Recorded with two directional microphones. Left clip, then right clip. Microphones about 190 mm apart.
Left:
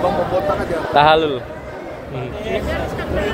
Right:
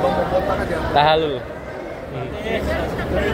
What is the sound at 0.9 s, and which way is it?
Speech, 30° left (ahead or behind).